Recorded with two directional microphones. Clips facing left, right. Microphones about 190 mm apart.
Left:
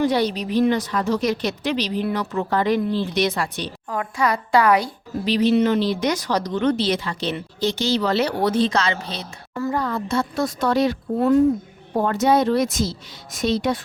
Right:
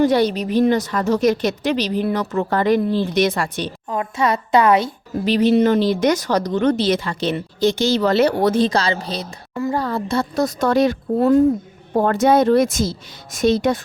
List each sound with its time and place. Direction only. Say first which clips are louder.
0.0 s speech: right 4 dB; 45° right (ahead or behind)
3.8 s a woman's voice: right 2 dB; 25° right (ahead or behind)
5.2 s a woman's voice: right 3 dB; 50° right (ahead or behind)